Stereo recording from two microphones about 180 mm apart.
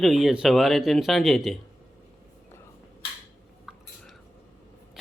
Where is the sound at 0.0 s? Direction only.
Centre (ahead or behind).